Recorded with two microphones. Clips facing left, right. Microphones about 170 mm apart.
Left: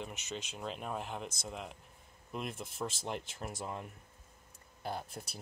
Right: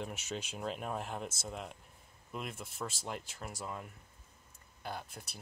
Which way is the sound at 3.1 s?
25° left (ahead or behind).